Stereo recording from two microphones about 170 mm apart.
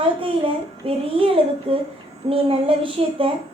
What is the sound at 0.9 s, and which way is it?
A woman's voice, 35° right (ahead or behind).